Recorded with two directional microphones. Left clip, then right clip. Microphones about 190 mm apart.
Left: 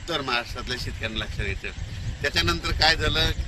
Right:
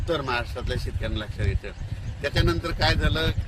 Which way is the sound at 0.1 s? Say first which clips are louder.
Even; 60° right (ahead or behind).